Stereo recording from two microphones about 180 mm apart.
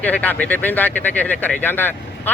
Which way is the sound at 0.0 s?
10° left (ahead or behind).